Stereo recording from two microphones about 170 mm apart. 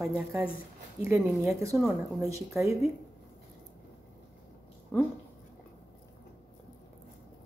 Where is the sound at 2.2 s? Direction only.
20° right (ahead or behind).